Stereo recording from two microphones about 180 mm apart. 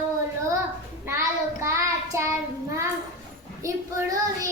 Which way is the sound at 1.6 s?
15° right (ahead or behind).